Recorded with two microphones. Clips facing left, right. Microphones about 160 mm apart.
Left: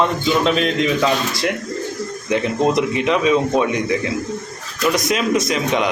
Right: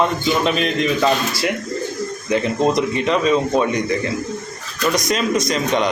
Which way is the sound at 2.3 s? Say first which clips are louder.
Even; 5° left (ahead or behind).